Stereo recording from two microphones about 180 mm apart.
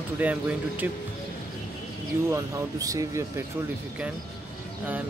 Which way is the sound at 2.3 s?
20° right (ahead or behind).